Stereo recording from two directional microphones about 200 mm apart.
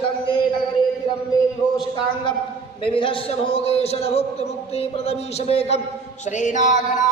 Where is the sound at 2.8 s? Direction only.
25° left (ahead or behind).